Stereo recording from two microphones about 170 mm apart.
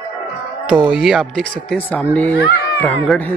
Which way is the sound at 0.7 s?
5° right (ahead or behind).